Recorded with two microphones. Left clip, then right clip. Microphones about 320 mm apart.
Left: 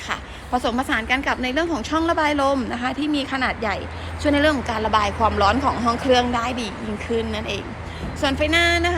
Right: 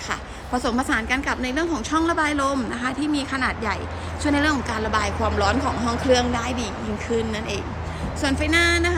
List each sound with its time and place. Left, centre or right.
0.1 s a woman's voice: centre